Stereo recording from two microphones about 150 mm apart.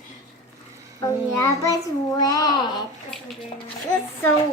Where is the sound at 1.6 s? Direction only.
25° left (ahead or behind).